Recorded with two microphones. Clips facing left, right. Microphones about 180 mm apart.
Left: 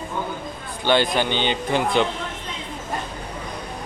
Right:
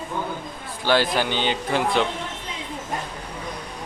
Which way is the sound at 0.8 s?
5° right (ahead or behind).